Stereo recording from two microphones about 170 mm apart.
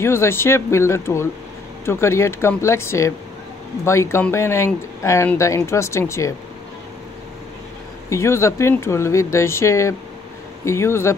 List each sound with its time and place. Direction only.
0.0 s speech: 15° left (ahead or behind)
8.1 s speech: 15° left (ahead or behind)